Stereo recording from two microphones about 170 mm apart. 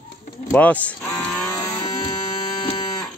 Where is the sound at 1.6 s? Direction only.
20° left (ahead or behind).